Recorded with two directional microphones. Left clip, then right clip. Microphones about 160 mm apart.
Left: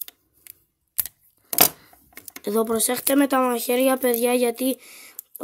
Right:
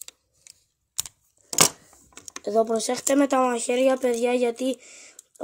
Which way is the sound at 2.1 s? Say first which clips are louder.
Right 1 dB; 20° left (ahead or behind).